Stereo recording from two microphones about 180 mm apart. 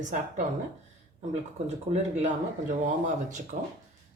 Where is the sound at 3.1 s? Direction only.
40° right (ahead or behind).